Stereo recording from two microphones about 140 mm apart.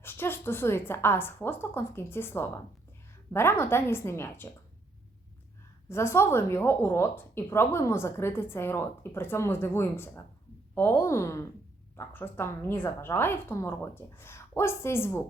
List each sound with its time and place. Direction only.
0.0 s a woman's voice: 15° left (ahead or behind)
5.9 s a woman's voice: 20° left (ahead or behind)